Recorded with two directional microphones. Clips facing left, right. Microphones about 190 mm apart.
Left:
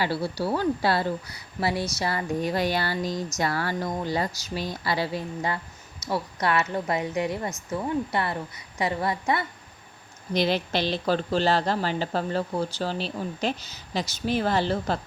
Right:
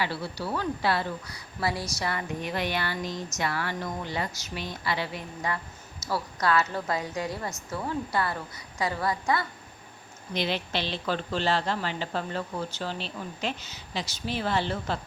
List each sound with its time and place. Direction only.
0.0 s a woman's voice: 35° left (ahead or behind)
10.3 s a woman's voice: 40° left (ahead or behind)